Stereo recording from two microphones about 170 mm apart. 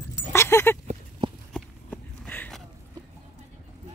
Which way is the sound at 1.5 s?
10° left (ahead or behind).